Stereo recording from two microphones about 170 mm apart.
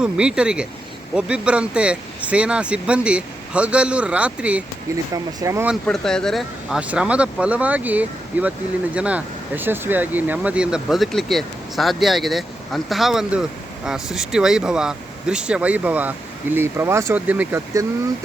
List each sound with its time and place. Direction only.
0.0 s speech: 5° right (ahead or behind)
5.1 s speech: 20° right (ahead or behind)
5.8 s speech: 5° left (ahead or behind)